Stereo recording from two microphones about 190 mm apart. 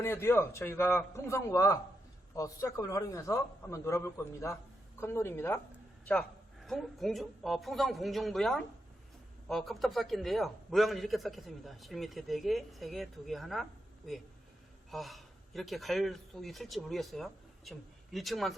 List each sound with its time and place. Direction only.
0.0 s a man's voice: 15° left (ahead or behind)